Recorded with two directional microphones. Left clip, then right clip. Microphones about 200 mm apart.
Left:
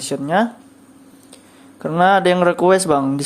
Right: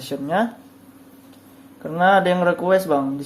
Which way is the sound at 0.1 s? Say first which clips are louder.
Left 4 dB; 10° left (ahead or behind).